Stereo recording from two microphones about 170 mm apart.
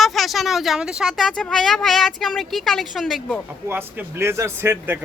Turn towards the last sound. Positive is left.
turn(degrees=-15)  # may be behind; listen again after turning